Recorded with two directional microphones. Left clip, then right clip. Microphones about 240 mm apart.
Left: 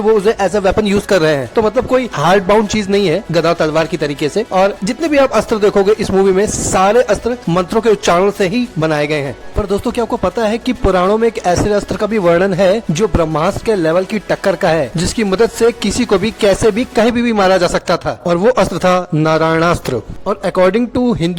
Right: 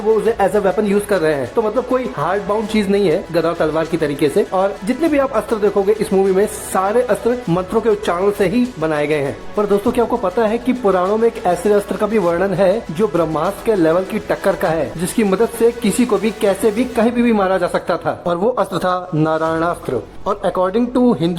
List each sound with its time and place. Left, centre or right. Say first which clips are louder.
0.3 s a woman's voice: left 2 dB; left